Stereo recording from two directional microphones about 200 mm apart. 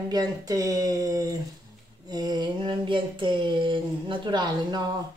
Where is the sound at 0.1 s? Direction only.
20° right (ahead or behind).